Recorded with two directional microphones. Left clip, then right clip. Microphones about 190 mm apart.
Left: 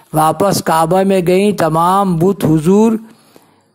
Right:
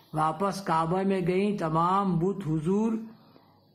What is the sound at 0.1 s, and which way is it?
A man's voice, 45° left (ahead or behind).